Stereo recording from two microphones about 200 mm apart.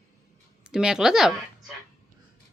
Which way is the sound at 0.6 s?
5° right (ahead or behind).